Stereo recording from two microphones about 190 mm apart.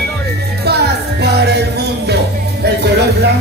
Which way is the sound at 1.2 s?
60° right (ahead or behind).